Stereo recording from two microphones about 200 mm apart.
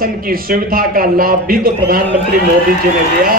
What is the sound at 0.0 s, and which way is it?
A man's voice, 45° right (ahead or behind).